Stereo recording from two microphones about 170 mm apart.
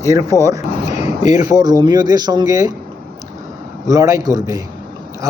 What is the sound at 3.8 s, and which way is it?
Speech, 20° right (ahead or behind).